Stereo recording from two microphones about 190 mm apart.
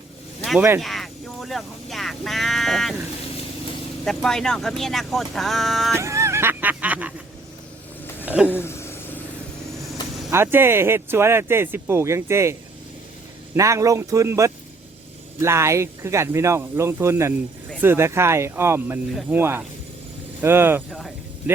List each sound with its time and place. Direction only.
0.8 s speech: centre (ahead or behind)
4.0 s speech: centre (ahead or behind)
5.9 s speech: 15° right (ahead or behind)
8.0 s a sound: 10° left (ahead or behind)
8.4 s vehicle: 10° left (ahead or behind)
10.3 s speech: 10° right (ahead or behind)
13.6 s speech: 15° right (ahead or behind)